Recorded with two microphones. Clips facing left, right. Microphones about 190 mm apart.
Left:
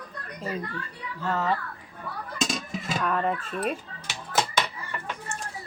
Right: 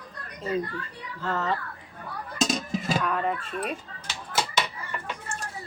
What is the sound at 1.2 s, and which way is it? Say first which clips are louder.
Speech: left 1 dB; 15° left (ahead or behind).